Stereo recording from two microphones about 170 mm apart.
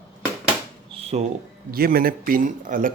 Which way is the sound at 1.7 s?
60° right (ahead or behind).